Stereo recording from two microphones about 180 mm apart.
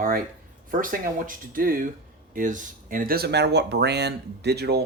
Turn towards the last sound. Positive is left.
turn(degrees=-65)  # may be behind; listen again after turning